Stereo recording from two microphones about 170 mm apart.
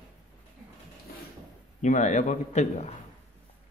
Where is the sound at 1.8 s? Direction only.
45° left (ahead or behind).